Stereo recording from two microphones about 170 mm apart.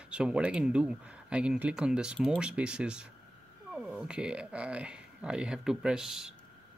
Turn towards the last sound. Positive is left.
turn(degrees=-5)  # may be behind; listen again after turning